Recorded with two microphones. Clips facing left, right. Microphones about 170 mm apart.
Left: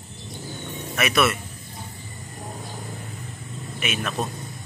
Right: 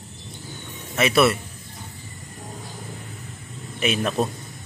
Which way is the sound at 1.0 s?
30° right (ahead or behind).